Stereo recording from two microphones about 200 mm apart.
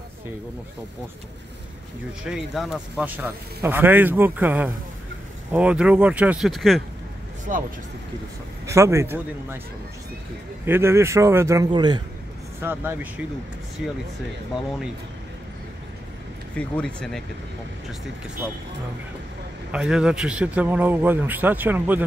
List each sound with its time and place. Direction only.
2.2 s speech: centre (ahead or behind)
7.5 s speech: 40° right (ahead or behind)
8.6 s speech: 15° right (ahead or behind)
10.6 s speech: 10° right (ahead or behind)
12.6 s speech: 10° right (ahead or behind)
16.5 s speech: 5° left (ahead or behind)
19.7 s speech: 5° right (ahead or behind)